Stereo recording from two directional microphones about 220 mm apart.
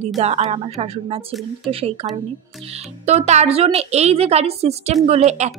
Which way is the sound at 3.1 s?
30° right (ahead or behind).